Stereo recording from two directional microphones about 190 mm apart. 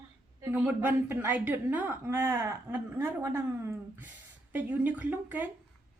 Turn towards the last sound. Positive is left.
turn(degrees=-10)  # may be behind; listen again after turning